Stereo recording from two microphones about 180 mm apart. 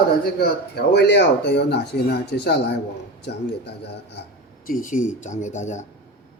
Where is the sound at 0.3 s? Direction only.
65° left (ahead or behind).